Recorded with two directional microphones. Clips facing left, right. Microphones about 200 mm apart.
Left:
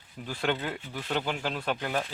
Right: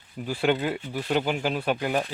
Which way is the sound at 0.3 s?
10° right (ahead or behind).